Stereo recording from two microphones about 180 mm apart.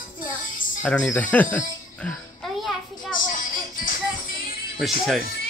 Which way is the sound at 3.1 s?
50° left (ahead or behind).